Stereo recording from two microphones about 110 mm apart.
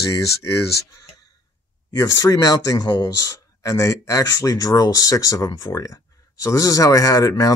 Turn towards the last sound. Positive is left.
turn(degrees=30)  # may be behind; listen again after turning